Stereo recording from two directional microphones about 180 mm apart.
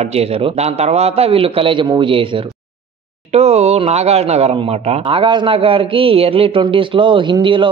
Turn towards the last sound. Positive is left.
turn(degrees=-30)  # may be behind; listen again after turning